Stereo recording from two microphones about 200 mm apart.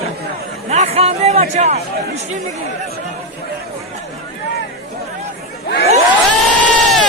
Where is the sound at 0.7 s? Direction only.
30° right (ahead or behind).